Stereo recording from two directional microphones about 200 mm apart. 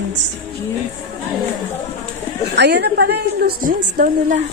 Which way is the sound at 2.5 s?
55° right (ahead or behind).